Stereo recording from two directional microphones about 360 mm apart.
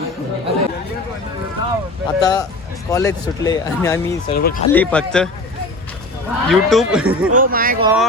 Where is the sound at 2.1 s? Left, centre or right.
Centre.